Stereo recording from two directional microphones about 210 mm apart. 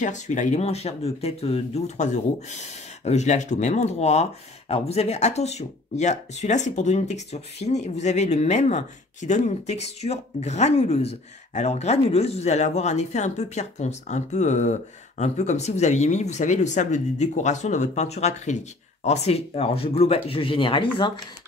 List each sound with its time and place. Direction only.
0.0 s speech: 35° left (ahead or behind)